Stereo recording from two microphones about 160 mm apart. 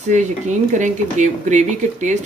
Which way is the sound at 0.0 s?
50° right (ahead or behind).